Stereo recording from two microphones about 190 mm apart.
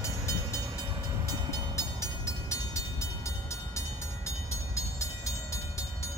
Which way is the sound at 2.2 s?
15° left (ahead or behind).